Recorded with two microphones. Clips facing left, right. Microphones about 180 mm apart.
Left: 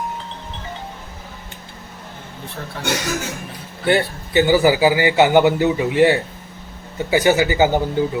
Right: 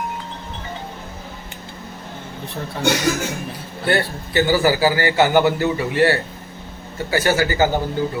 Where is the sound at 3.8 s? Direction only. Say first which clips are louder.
Left 2 dB; 15° left (ahead or behind).